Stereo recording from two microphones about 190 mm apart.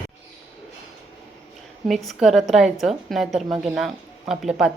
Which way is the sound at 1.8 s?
Centre (ahead or behind).